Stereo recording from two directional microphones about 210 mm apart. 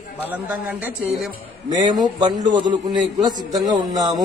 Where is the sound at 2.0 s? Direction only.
20° right (ahead or behind).